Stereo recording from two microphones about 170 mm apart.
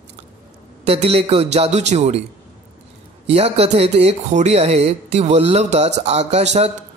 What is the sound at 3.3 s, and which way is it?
Speech, 35° right (ahead or behind).